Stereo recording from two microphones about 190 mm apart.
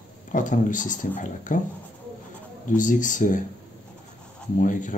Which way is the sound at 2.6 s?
45° left (ahead or behind).